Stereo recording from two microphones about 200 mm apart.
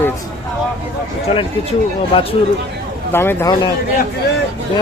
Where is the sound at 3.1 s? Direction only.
10° left (ahead or behind).